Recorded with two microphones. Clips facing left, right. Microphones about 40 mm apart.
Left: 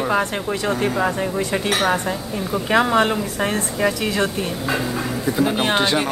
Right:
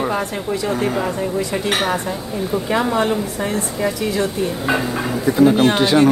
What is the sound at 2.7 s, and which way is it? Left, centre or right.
Speech, left.